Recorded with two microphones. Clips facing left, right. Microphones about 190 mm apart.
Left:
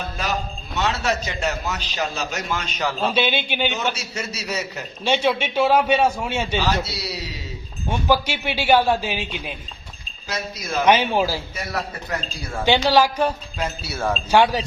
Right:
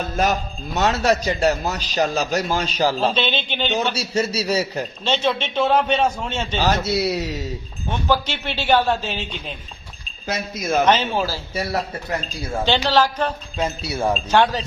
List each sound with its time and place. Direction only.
0.2 s a man's voice: 45° right (ahead or behind)
3.2 s speech: 10° left (ahead or behind)
3.9 s a man's voice: 30° right (ahead or behind)
5.0 s speech: 10° left (ahead or behind)
6.6 s a man's voice: 50° right (ahead or behind)
7.9 s speech: 10° left (ahead or behind)
10.2 s a man's voice: 55° right (ahead or behind)
10.8 s speech: 10° left (ahead or behind)
12.6 s speech: 10° left (ahead or behind)
13.6 s speech: 20° right (ahead or behind)
14.3 s speech: 10° left (ahead or behind)